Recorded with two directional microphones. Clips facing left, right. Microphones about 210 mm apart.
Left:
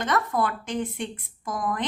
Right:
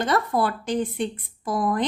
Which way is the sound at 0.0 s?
35° right (ahead or behind).